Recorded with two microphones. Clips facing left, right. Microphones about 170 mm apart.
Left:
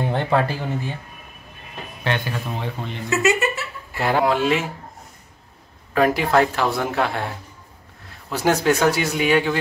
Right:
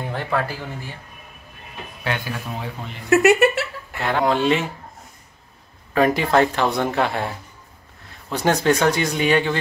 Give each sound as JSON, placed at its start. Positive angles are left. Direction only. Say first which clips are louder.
{"t": 0.0, "sound": "speech", "louder": "left 4 dB", "side_deg": 25}
{"t": 2.0, "sound": "speech", "louder": "left 2 dB", "side_deg": -5}
{"t": 3.1, "sound": "speech", "louder": "right 6 dB", "side_deg": -60}
{"t": 4.0, "sound": "speech", "louder": "left 1 dB", "side_deg": 5}
{"t": 5.9, "sound": "speech", "louder": "even", "side_deg": 5}